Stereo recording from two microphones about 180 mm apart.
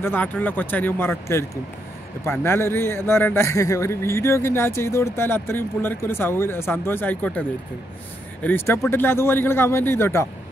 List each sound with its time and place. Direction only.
0.0 s a man's voice: 10° left (ahead or behind)